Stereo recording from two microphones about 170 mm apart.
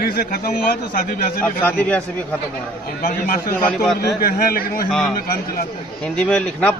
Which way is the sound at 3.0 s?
55° left (ahead or behind).